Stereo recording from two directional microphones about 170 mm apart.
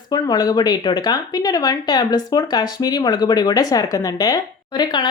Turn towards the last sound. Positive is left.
turn(degrees=25)  # may be behind; listen again after turning